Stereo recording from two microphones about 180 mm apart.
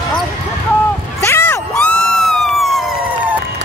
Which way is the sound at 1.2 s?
10° left (ahead or behind).